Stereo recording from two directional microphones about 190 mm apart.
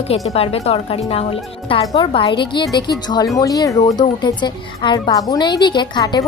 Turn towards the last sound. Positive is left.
turn(degrees=20)  # may be behind; listen again after turning